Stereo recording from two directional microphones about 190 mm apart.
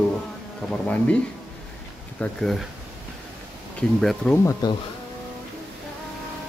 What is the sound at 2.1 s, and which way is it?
Speech, centre (ahead or behind).